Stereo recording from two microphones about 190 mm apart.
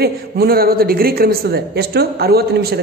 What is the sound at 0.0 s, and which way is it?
A woman's voice, 55° right (ahead or behind).